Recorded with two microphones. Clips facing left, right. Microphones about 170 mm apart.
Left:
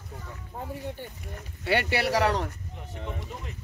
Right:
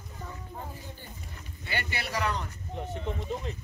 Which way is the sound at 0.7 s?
65° left (ahead or behind).